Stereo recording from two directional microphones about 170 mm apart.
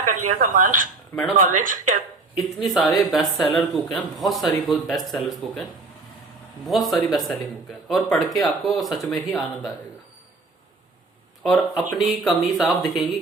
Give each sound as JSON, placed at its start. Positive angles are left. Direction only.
{"t": 0.1, "sound": "speech", "side_deg": -50}
{"t": 2.3, "sound": "speech", "side_deg": 0}
{"t": 6.7, "sound": "speech", "side_deg": 0}
{"t": 11.4, "sound": "speech", "side_deg": 0}